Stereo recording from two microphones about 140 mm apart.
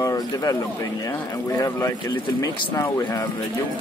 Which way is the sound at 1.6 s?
25° left (ahead or behind).